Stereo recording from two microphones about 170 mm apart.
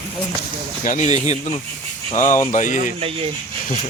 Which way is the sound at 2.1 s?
50° left (ahead or behind).